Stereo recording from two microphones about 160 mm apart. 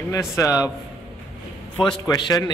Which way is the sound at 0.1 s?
20° left (ahead or behind).